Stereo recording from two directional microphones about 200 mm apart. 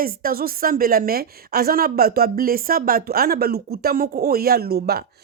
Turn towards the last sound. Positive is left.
turn(degrees=-50)  # may be behind; listen again after turning